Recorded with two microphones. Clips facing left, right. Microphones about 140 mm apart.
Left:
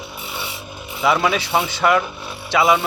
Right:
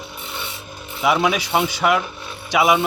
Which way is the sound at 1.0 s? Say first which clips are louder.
Even; 5° right (ahead or behind).